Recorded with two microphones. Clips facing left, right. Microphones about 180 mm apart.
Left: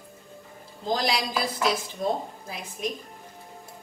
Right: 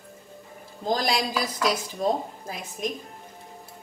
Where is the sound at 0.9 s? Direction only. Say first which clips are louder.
Right 1 dB; 45° right (ahead or behind).